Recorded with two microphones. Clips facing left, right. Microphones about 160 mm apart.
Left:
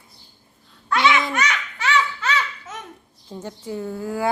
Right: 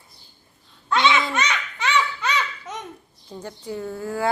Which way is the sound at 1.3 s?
20° right (ahead or behind).